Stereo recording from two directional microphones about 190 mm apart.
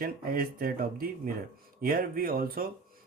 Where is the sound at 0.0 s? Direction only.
50° right (ahead or behind).